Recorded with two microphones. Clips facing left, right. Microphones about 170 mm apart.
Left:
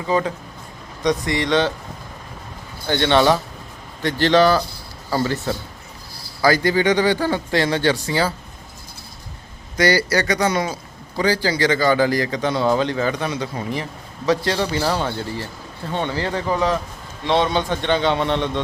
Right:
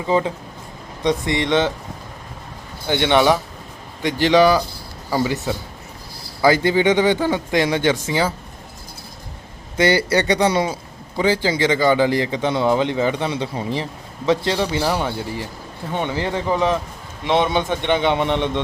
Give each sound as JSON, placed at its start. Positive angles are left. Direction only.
{"t": 0.1, "sound": "speech", "side_deg": -20}
{"t": 2.8, "sound": "a man's voice", "side_deg": -15}
{"t": 9.7, "sound": "a man's voice", "side_deg": -25}